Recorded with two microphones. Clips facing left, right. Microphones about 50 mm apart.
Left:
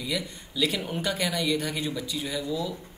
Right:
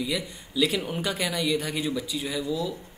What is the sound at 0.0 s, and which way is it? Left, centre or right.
Speech, centre.